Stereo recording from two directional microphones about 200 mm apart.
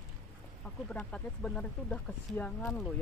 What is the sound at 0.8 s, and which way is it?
Speech, 5° left (ahead or behind).